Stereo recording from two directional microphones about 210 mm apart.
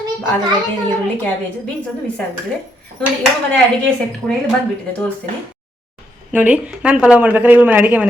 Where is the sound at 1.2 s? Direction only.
5° left (ahead or behind).